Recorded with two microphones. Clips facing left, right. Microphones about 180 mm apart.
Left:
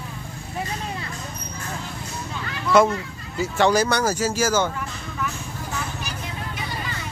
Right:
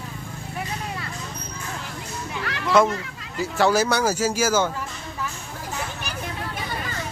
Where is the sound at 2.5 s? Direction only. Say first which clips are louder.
Right 2 dB; 90° right.